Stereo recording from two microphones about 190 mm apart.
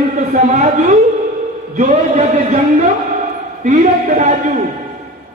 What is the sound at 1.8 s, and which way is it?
Speech, 40° right (ahead or behind).